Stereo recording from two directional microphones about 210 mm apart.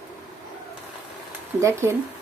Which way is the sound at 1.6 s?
15° right (ahead or behind).